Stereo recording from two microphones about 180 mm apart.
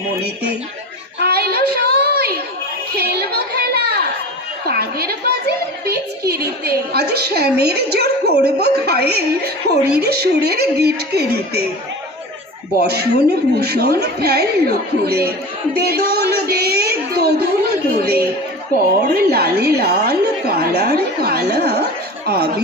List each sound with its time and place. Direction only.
1.2 s a sound: 60° right (ahead or behind)
5.8 s a woman's voice: 60° right (ahead or behind)
12.8 s a woman's voice: 60° right (ahead or behind)